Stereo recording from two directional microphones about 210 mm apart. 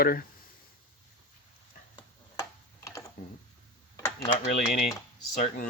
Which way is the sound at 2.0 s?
20° left (ahead or behind).